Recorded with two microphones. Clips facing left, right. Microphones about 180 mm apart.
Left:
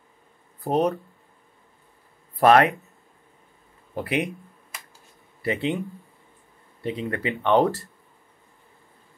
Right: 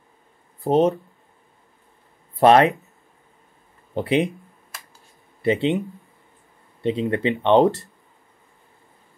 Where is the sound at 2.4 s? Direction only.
25° right (ahead or behind).